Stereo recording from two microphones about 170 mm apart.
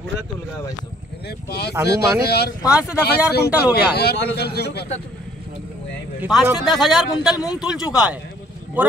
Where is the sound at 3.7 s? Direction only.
70° left (ahead or behind).